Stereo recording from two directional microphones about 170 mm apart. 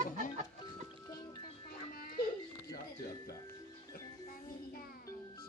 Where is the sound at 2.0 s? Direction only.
55° left (ahead or behind).